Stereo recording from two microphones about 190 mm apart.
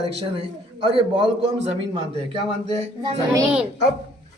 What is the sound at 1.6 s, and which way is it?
Speech, 30° right (ahead or behind).